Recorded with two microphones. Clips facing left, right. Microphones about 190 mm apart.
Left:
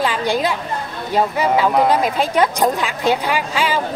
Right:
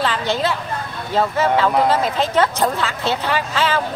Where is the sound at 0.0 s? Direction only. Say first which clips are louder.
Left 2 dB; 10° left (ahead or behind).